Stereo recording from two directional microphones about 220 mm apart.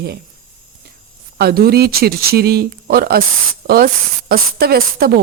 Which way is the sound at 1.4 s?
45° right (ahead or behind).